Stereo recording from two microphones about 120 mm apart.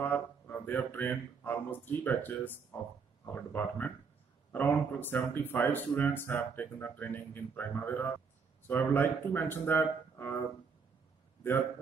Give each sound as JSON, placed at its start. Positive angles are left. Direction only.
{"t": 0.0, "sound": "speech", "side_deg": 15}